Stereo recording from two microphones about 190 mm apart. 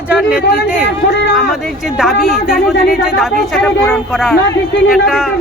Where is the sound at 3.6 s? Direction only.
Centre (ahead or behind).